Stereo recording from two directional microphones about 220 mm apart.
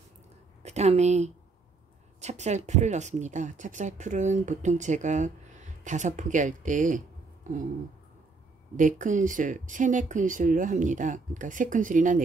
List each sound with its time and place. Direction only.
0.6 s speech: 30° right (ahead or behind)
8.7 s speech: 35° right (ahead or behind)